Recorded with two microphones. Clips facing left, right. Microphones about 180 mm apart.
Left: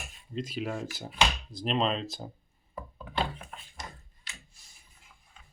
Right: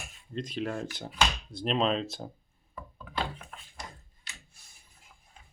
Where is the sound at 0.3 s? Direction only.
5° left (ahead or behind).